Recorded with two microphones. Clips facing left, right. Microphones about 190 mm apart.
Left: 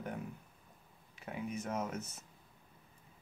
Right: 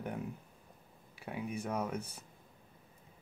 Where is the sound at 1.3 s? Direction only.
15° right (ahead or behind).